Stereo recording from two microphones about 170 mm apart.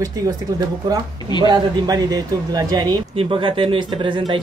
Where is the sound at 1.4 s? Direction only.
20° right (ahead or behind).